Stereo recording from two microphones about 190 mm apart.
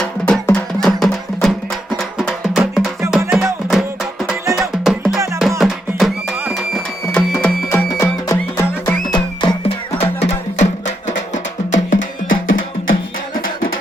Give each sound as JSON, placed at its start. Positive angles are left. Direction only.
{"t": 0.0, "sound": "music", "side_deg": 5}
{"t": 5.1, "sound": "music", "side_deg": -15}
{"t": 5.4, "sound": "music", "side_deg": 0}
{"t": 7.3, "sound": "music", "side_deg": 15}
{"t": 11.9, "sound": "music", "side_deg": 90}